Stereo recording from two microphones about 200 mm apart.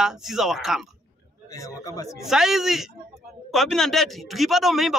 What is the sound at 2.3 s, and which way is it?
A man's voice, centre (ahead or behind).